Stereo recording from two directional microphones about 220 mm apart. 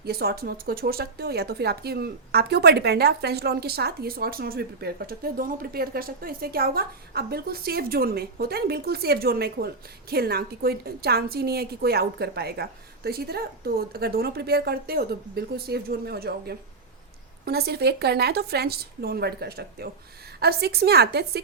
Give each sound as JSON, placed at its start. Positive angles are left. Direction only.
{"t": 0.0, "sound": "speech", "side_deg": -45}